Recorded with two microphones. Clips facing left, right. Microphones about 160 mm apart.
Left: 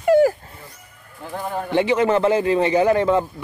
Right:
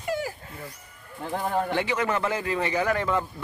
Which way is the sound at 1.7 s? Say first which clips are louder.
Left 8 dB; 25° left (ahead or behind).